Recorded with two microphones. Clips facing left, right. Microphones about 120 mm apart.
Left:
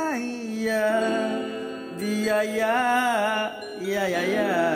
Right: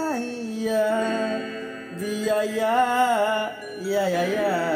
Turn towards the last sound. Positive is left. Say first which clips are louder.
# right 3 dB
turn(degrees=-15)  # may be behind; listen again after turning